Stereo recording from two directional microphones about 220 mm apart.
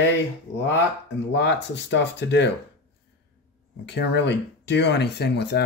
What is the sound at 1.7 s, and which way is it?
Speech, 55° left (ahead or behind).